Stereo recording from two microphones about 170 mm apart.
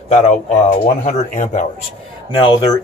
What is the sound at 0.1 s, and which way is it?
Speech, 45° left (ahead or behind).